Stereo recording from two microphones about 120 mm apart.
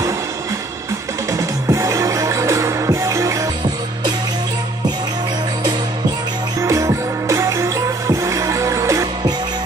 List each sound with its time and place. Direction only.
1.3 s music: 25° right (ahead or behind)
6.6 s music: 25° right (ahead or behind)